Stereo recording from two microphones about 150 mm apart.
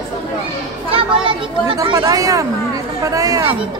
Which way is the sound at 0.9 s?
35° right (ahead or behind).